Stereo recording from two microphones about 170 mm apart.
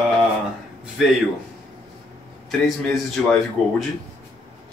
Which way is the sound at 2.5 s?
Centre (ahead or behind).